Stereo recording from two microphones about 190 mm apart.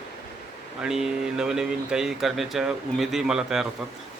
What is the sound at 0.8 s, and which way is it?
Speech, 5° right (ahead or behind).